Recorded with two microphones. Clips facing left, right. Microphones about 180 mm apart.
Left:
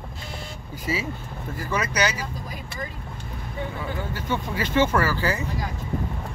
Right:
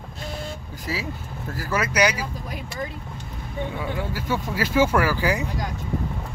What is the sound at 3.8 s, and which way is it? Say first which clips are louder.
Speech: right 2 dB; 10° right (ahead or behind).